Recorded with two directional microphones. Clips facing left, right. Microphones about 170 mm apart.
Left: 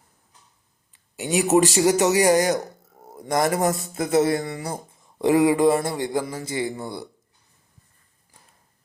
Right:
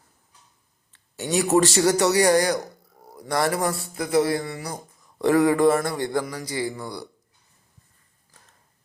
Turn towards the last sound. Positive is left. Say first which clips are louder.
# left 1 dB
turn(degrees=20)  # may be behind; listen again after turning